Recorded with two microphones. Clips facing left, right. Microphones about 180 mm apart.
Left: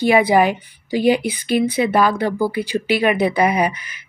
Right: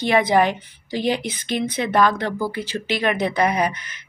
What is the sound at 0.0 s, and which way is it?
A woman's voice, 10° left (ahead or behind).